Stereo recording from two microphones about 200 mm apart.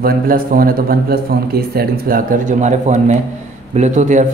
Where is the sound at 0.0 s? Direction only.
45° right (ahead or behind).